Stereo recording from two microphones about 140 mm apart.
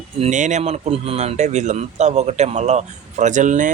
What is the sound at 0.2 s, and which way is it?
Speech, 60° right (ahead or behind).